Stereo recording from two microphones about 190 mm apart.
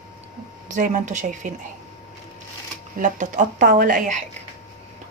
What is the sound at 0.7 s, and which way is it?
Speech, 40° right (ahead or behind).